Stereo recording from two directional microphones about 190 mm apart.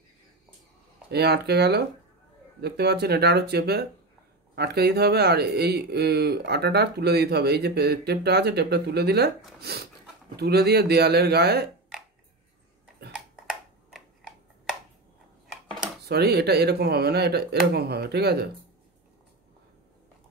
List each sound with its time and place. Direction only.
1.1 s speech: 60° right (ahead or behind)
15.4 s cutlery: centre (ahead or behind)
16.0 s speech: 55° right (ahead or behind)